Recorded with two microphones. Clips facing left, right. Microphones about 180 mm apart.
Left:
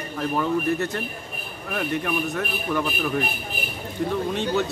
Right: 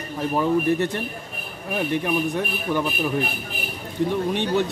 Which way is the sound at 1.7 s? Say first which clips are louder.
Right 3 dB; 20° right (ahead or behind).